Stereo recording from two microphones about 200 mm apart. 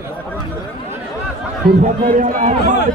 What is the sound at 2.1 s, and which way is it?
Speech, 40° right (ahead or behind).